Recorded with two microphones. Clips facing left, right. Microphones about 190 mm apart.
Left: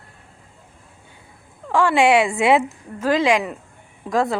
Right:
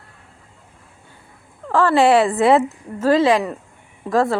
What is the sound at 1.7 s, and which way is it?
Speech, 15° left (ahead or behind).